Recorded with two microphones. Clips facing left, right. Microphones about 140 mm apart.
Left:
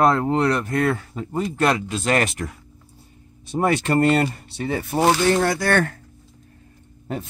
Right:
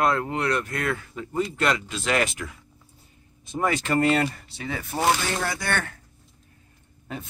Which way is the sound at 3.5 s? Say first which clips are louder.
Left 4 dB; 35° left (ahead or behind).